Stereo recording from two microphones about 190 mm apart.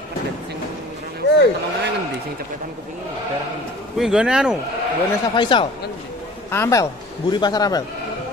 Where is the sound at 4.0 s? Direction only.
5° right (ahead or behind).